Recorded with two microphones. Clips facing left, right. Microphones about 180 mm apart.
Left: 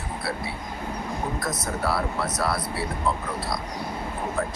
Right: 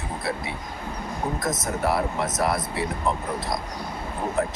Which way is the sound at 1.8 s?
20° right (ahead or behind).